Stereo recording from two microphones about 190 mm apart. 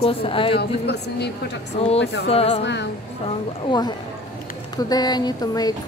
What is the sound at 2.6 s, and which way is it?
Speech, 65° left (ahead or behind).